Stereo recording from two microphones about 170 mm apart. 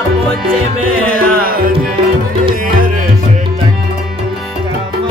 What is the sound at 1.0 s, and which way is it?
Music, 60° right (ahead or behind).